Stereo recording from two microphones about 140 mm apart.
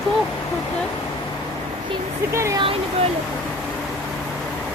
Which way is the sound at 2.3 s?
20° right (ahead or behind).